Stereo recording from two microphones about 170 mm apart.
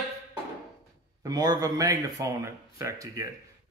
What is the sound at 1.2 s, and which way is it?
Speech, 20° right (ahead or behind).